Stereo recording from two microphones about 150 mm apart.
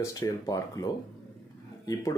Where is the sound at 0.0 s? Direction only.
20° left (ahead or behind).